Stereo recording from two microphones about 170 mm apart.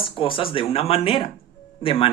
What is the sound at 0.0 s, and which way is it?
Speech, 30° left (ahead or behind).